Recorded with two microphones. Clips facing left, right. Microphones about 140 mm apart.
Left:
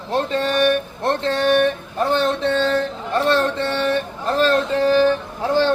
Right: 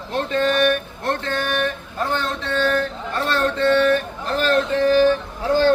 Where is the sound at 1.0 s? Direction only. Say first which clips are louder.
Left 8 dB; 25° left (ahead or behind).